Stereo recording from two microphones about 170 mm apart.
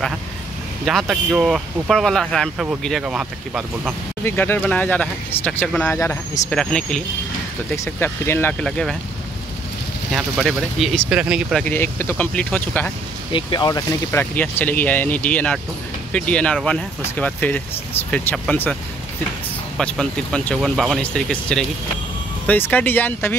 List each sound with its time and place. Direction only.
0.8 s speech: centre (ahead or behind)
4.2 s speech: 10° left (ahead or behind)
6.5 s speech: 5° left (ahead or behind)
7.7 s speech: 15° left (ahead or behind)
10.1 s speech: centre (ahead or behind)
11.6 s speech: 10° left (ahead or behind)
13.3 s speech: 25° left (ahead or behind)
14.3 s speech: 10° left (ahead or behind)
19.8 s speech: 5° left (ahead or behind)